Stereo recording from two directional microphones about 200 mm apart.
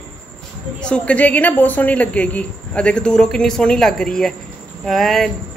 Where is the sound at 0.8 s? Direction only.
5° left (ahead or behind).